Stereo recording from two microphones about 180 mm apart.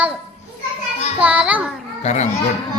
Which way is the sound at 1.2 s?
5° right (ahead or behind).